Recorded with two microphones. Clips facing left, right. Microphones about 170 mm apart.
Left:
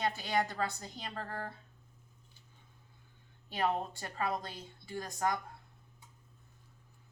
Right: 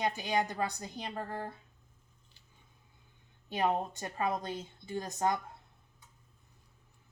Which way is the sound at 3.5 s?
20° right (ahead or behind).